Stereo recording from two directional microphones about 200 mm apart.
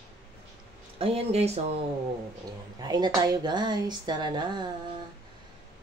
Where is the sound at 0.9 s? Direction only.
30° right (ahead or behind).